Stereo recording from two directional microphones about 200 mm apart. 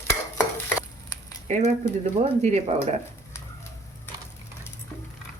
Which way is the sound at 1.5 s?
35° right (ahead or behind).